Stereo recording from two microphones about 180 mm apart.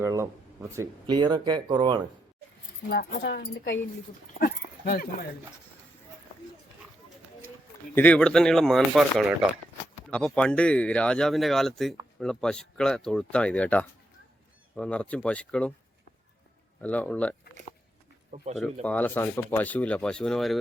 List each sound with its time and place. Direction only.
0.0 s speech: 15° right (ahead or behind)
3.2 s speech: 85° left
4.4 s dog: 55° left (ahead or behind)
7.9 s speech: 10° left (ahead or behind)
16.8 s speech: 10° left (ahead or behind)
18.5 s speech: 5° left (ahead or behind)